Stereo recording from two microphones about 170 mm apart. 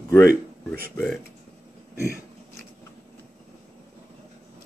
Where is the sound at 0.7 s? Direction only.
5° left (ahead or behind).